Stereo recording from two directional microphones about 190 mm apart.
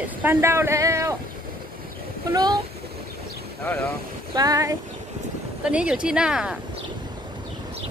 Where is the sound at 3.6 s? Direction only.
10° left (ahead or behind).